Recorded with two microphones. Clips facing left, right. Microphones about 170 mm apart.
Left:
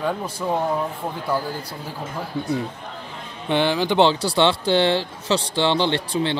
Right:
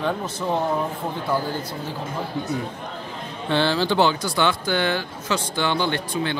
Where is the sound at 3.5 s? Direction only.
20° left (ahead or behind).